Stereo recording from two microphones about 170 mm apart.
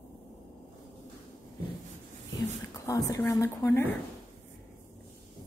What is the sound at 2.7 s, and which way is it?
A woman's voice, 20° left (ahead or behind).